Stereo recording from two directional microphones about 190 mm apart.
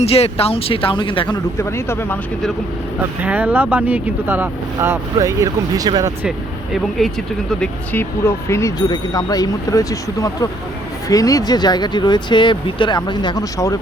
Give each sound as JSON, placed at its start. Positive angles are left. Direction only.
{"t": 0.0, "sound": "speech", "side_deg": 30}
{"t": 1.5, "sound": "speech", "side_deg": 15}
{"t": 3.2, "sound": "speech", "side_deg": -10}
{"t": 7.6, "sound": "speech", "side_deg": 10}